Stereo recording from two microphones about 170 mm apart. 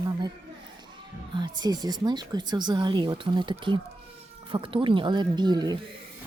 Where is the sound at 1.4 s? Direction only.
25° right (ahead or behind).